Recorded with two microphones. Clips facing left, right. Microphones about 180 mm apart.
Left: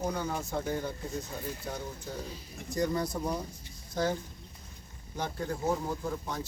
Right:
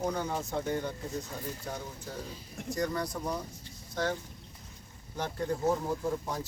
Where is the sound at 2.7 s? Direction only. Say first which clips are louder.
Left 2 dB; 25° left (ahead or behind).